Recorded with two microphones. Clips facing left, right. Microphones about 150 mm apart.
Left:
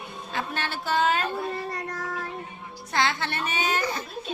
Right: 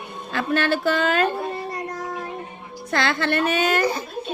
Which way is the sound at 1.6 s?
15° right (ahead or behind).